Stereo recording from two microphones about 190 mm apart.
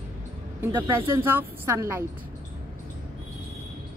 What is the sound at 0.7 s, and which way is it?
A woman's voice, 10° right (ahead or behind).